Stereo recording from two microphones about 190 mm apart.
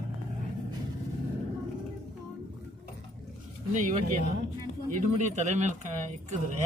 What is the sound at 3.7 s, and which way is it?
Speech, 40° right (ahead or behind).